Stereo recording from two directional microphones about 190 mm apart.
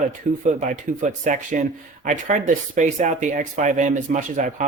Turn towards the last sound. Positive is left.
turn(degrees=-40)  # may be behind; listen again after turning